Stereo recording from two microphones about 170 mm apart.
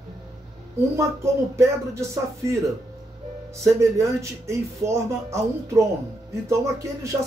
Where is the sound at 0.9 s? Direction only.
15° right (ahead or behind).